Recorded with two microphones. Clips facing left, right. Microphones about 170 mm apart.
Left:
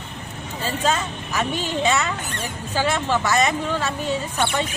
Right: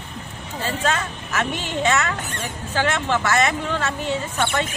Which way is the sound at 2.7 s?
10° left (ahead or behind).